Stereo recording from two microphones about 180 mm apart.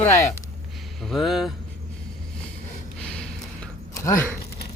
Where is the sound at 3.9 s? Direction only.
15° left (ahead or behind).